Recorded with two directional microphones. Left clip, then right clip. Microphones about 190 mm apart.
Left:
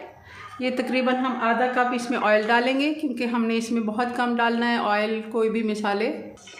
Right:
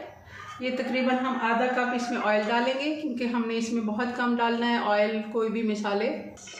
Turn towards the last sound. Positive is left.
turn(degrees=50)  # may be behind; listen again after turning